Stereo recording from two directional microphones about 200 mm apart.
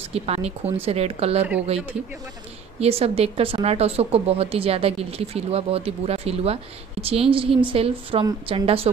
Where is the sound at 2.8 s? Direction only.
30° right (ahead or behind).